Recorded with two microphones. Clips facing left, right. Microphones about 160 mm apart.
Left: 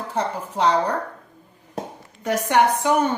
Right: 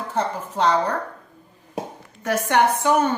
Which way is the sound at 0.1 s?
10° left (ahead or behind).